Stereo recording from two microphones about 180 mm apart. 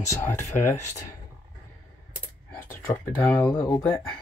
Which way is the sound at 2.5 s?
10° left (ahead or behind).